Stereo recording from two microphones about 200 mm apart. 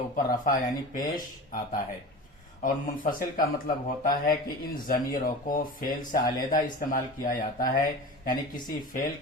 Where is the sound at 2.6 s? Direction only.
45° left (ahead or behind).